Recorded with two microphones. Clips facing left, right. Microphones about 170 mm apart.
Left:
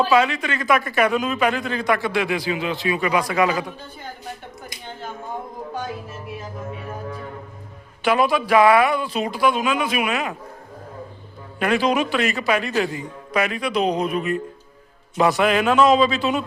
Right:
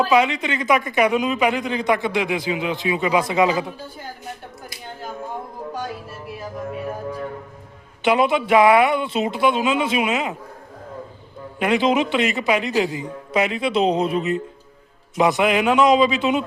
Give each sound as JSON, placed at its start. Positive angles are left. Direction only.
{"t": 0.1, "sound": "speech", "side_deg": -20}
{"t": 8.0, "sound": "speech", "side_deg": -20}
{"t": 11.6, "sound": "a man's voice", "side_deg": -20}